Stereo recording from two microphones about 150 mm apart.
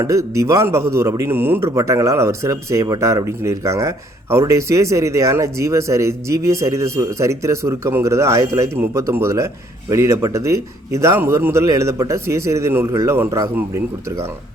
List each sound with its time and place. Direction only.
0.0 s a man's voice: 20° right (ahead or behind)